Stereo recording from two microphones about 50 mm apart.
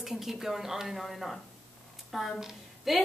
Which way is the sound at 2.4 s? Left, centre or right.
Centre.